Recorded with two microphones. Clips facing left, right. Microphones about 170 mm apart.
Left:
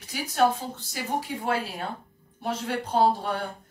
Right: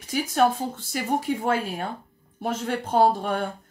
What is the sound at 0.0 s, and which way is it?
Speech, 50° right (ahead or behind).